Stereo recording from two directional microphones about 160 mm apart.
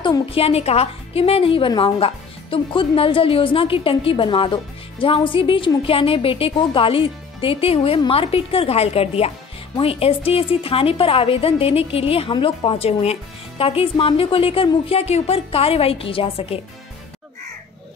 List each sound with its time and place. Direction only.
0.0 s a woman's voice: 35° left (ahead or behind)